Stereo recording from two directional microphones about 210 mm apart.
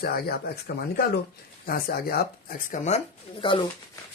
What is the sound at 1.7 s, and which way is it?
Speech, 45° left (ahead or behind).